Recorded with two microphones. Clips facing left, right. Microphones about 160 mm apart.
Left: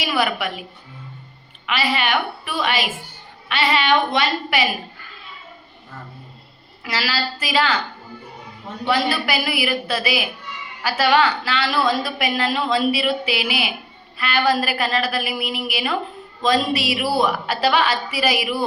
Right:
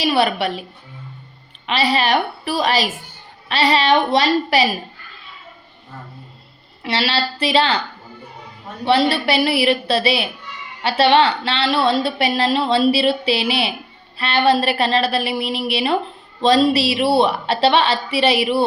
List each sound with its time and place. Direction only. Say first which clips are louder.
0.0 s a woman's voice: right 4 dB; 30° right (ahead or behind)
1.6 s a woman's voice: right 4 dB; 30° right (ahead or behind)
6.8 s a woman's voice: right 4 dB; 30° right (ahead or behind)
8.8 s a woman's voice: right 4 dB; 30° right (ahead or behind)